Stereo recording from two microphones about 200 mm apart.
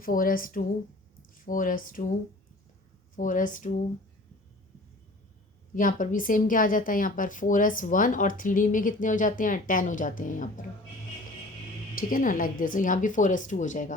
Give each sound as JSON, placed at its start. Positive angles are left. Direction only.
{"t": 0.0, "sound": "speech", "side_deg": 45}
{"t": 3.2, "sound": "speech", "side_deg": 40}
{"t": 5.7, "sound": "speech", "side_deg": 40}
{"t": 11.9, "sound": "speech", "side_deg": 45}